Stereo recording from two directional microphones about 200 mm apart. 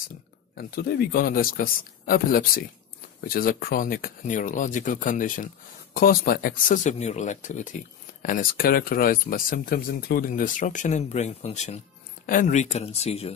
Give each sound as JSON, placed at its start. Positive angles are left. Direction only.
{"t": 0.6, "sound": "speech", "side_deg": 50}